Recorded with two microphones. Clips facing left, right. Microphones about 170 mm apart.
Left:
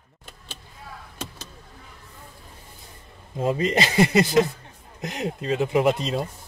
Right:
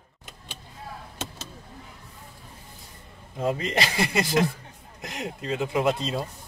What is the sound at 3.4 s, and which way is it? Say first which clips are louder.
Speech: left 3 dB; 25° left (ahead or behind).